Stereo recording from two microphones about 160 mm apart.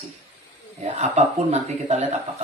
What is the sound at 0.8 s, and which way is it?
Speech, 40° right (ahead or behind).